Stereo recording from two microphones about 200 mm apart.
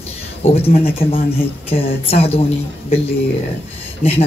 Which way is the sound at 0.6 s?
30° left (ahead or behind).